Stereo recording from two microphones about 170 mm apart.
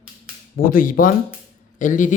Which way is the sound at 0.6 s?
55° left (ahead or behind).